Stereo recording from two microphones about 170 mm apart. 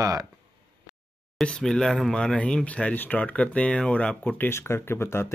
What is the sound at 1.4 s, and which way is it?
Speech, 5° left (ahead or behind).